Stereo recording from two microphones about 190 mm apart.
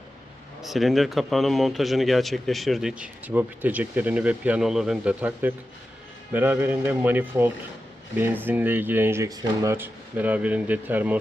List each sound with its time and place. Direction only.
0.6 s speech: centre (ahead or behind)